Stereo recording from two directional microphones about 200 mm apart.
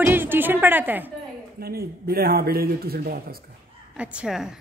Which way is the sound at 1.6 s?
50° right (ahead or behind).